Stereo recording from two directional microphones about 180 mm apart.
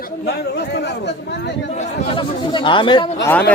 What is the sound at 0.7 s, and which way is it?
Speech, 70° left (ahead or behind).